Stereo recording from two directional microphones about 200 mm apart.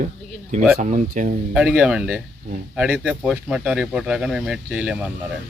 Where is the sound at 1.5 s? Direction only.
5° right (ahead or behind).